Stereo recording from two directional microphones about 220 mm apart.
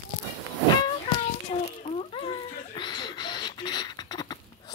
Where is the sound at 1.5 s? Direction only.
30° left (ahead or behind).